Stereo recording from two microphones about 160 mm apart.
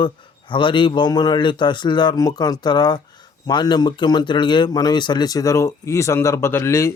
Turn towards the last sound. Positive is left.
turn(degrees=15)  # may be behind; listen again after turning